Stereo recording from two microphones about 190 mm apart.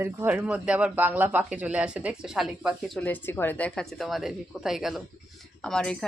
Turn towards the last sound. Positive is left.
turn(degrees=5)  # may be behind; listen again after turning